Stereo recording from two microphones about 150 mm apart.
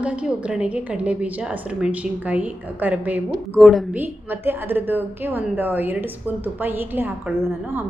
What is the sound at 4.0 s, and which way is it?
A woman's voice, 15° right (ahead or behind).